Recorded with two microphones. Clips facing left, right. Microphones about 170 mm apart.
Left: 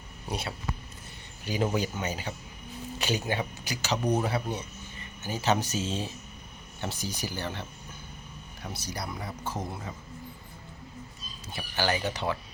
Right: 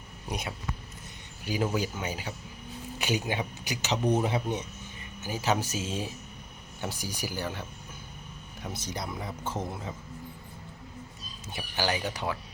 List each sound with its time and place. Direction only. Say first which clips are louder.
0.3 s speech: left 1 dB; 15° right (ahead or behind)
5.2 s speech: left 1 dB; 10° right (ahead or behind)
8.8 s speech: even; 20° right (ahead or behind)
9.4 s speech: right 1 dB; 10° left (ahead or behind)
11.4 s speech: left 1 dB; 15° right (ahead or behind)